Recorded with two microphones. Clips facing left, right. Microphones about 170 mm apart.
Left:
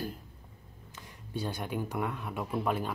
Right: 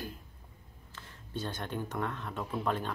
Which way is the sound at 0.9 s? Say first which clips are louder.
Left 2 dB; 15° left (ahead or behind).